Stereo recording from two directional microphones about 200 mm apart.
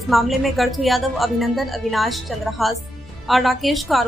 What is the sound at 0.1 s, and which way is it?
A woman's voice, centre (ahead or behind).